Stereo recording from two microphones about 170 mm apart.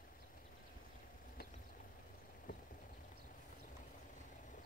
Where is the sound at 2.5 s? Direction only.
50° left (ahead or behind).